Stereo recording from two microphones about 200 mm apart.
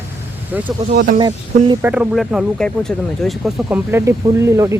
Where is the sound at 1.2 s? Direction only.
20° right (ahead or behind).